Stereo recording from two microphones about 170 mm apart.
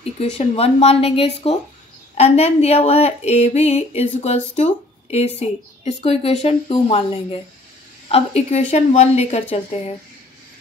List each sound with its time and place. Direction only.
0.0 s speech: 35° left (ahead or behind)